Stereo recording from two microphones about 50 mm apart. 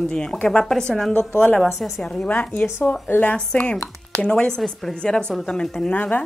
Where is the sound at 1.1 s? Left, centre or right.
Left.